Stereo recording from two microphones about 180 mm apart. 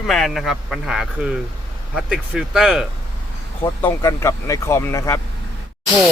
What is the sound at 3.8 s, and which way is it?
Speech, 15° left (ahead or behind).